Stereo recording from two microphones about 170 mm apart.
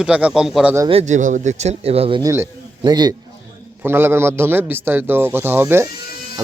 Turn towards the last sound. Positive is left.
turn(degrees=-15)  # may be behind; listen again after turning